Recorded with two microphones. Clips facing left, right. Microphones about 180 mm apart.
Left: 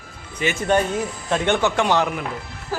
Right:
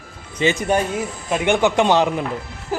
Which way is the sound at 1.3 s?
10° right (ahead or behind).